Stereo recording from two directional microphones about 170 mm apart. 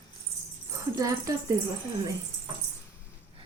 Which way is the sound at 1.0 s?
20° right (ahead or behind).